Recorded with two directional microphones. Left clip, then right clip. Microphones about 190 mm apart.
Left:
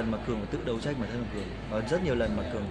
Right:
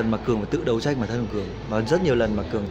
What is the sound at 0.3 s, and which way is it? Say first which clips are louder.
Speech: right 9 dB; 55° right (ahead or behind).